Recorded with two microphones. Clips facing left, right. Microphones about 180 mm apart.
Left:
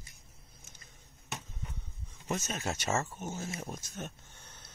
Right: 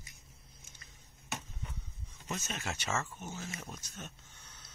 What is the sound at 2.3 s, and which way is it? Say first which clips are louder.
Speech: left 5 dB; 45° left (ahead or behind).